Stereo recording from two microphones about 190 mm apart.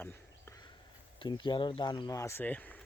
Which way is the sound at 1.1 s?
25° left (ahead or behind).